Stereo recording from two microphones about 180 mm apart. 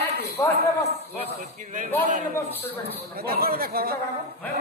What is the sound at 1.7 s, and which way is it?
Speech, 45° right (ahead or behind).